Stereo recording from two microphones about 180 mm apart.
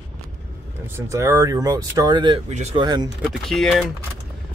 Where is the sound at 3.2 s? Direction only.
Centre (ahead or behind).